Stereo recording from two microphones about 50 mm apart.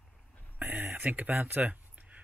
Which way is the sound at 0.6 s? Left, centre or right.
Right.